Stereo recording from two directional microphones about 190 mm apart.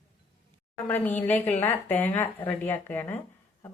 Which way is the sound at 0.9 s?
10° left (ahead or behind).